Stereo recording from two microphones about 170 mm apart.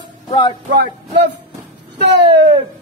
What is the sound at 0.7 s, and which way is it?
Music, 90° right.